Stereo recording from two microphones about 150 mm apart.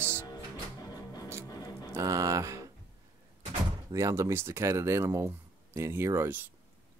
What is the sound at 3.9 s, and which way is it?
Speech, 20° right (ahead or behind).